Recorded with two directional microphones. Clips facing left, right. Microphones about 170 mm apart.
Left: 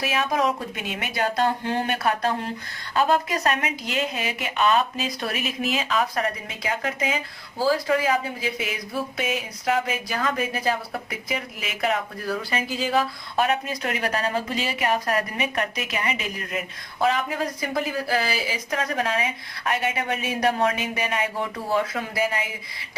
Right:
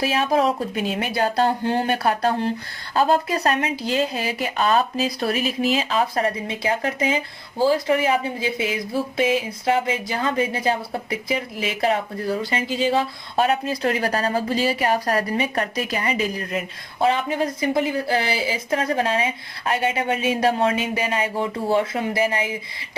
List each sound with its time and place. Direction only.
0.0 s speech: 30° right (ahead or behind)